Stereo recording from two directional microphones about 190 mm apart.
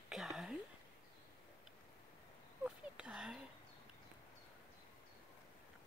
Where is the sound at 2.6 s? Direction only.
5° right (ahead or behind).